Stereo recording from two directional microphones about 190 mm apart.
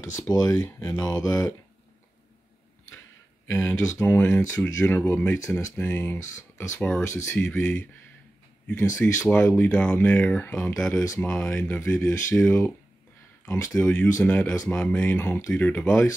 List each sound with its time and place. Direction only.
0.2 s speech: 15° left (ahead or behind)
3.4 s speech: 15° left (ahead or behind)